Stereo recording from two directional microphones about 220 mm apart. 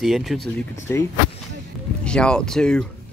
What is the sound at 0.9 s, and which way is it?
Speech, 10° left (ahead or behind).